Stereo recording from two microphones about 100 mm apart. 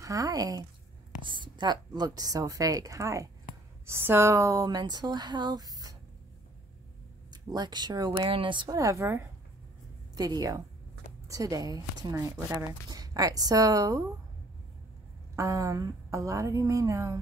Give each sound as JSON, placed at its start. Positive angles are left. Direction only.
{"t": 0.0, "sound": "a woman's voice", "side_deg": -35}
{"t": 1.2, "sound": "a woman's voice", "side_deg": -50}
{"t": 4.6, "sound": "speech", "side_deg": -45}
{"t": 7.5, "sound": "speech", "side_deg": -45}
{"t": 8.3, "sound": "speech", "side_deg": -55}
{"t": 8.6, "sound": "a woman's voice", "side_deg": -35}
{"t": 10.1, "sound": "a woman's voice", "side_deg": -40}
{"t": 15.3, "sound": "a woman's voice", "side_deg": -30}